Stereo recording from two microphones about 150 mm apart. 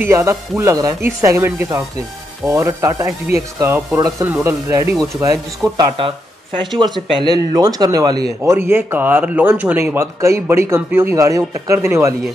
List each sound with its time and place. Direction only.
0.0 s speech: 20° right (ahead or behind)
8.5 s speech: 15° right (ahead or behind)